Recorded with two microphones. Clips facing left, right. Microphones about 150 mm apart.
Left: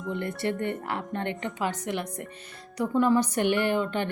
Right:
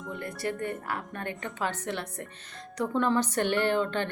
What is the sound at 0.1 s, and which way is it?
A woman's voice, 25° left (ahead or behind).